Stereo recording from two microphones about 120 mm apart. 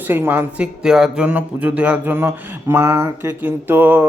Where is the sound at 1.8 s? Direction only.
15° right (ahead or behind).